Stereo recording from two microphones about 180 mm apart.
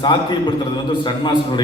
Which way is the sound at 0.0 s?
25° left (ahead or behind).